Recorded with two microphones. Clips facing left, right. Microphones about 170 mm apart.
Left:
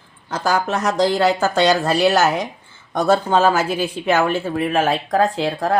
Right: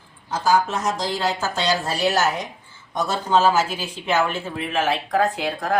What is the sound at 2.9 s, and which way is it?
A woman's voice, 55° left (ahead or behind).